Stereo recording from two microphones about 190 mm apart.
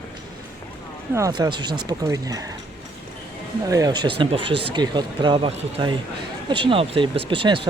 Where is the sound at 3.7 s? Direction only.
20° right (ahead or behind).